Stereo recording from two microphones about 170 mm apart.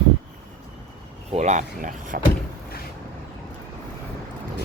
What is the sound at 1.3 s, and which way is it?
Speech, 45° right (ahead or behind).